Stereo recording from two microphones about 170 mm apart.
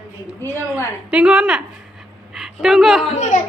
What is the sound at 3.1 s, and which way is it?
Speech, 45° left (ahead or behind).